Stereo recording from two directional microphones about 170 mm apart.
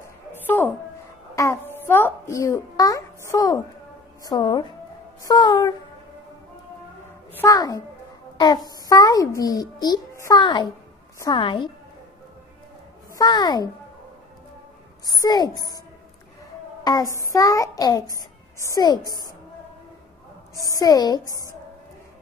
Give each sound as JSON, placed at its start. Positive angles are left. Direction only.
{"t": 0.3, "sound": "a sound", "side_deg": 10}
{"t": 1.3, "sound": "babbling", "side_deg": 15}
{"t": 3.3, "sound": "a child's voice", "side_deg": 20}
{"t": 7.3, "sound": "a child's voice", "side_deg": 20}
{"t": 13.1, "sound": "a child's voice", "side_deg": 25}
{"t": 15.0, "sound": "a child's voice", "side_deg": 20}
{"t": 16.8, "sound": "a child's voice", "side_deg": 20}
{"t": 20.8, "sound": "a child's voice", "side_deg": 20}